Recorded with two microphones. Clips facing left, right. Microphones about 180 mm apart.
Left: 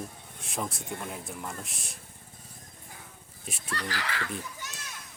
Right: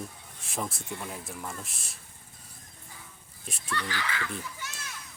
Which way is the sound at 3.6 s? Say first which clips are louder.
Right 1 dB; 35° left (ahead or behind).